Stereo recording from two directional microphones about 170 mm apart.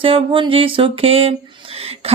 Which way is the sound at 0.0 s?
30° right (ahead or behind).